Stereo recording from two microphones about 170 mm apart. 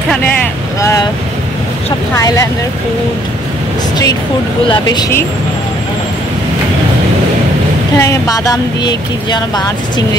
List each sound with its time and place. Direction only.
0.7 s speech: 20° left (ahead or behind)
2.1 s speech: 20° left (ahead or behind)
4.6 s speech: 25° left (ahead or behind)
8.0 s speech: 20° left (ahead or behind)